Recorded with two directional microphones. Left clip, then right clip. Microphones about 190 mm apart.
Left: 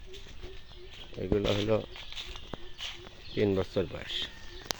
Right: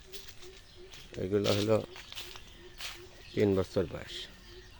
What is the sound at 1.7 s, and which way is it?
Speech, 5° right (ahead or behind).